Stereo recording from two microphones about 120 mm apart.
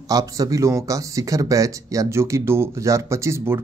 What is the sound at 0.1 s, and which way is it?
Speech, 30° right (ahead or behind).